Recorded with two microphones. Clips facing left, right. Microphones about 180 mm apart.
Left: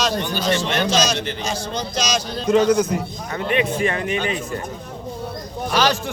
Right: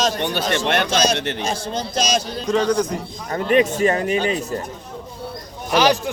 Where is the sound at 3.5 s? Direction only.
40° right (ahead or behind).